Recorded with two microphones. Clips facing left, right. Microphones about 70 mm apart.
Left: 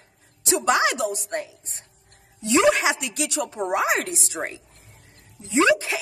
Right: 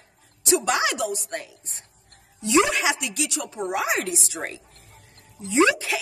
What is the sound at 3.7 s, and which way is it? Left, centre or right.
Speech, left.